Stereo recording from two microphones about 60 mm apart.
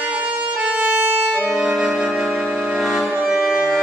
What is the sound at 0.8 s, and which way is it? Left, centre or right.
Music, right.